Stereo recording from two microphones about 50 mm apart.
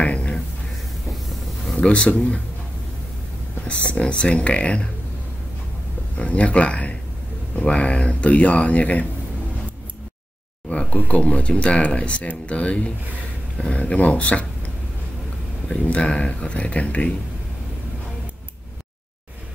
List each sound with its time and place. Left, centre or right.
0.0 s a sound: left
1.8 s speech: left
3.6 s speech: left
6.1 s speech: left
10.7 s a sound: left
11.0 s speech: left
15.8 s speech: left